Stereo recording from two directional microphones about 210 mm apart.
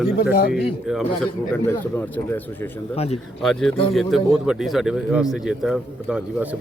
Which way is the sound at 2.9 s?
30° left (ahead or behind).